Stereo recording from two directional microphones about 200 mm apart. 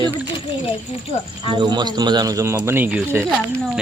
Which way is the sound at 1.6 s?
20° right (ahead or behind).